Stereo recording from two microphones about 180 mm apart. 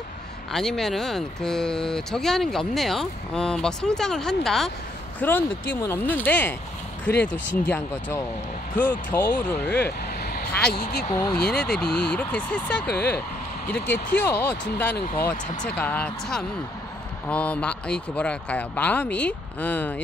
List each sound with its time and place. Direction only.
0.5 s speech: centre (ahead or behind)
10.7 s speech: 60° left (ahead or behind)
11.0 s speech: 10° left (ahead or behind)